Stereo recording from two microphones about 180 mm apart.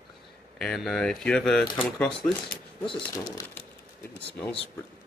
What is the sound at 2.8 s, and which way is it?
Speech, 20° left (ahead or behind).